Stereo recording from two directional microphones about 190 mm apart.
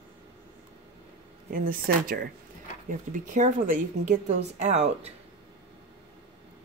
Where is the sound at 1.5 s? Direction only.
50° right (ahead or behind).